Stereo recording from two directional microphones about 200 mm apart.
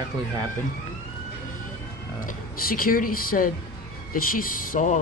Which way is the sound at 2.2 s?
45° left (ahead or behind).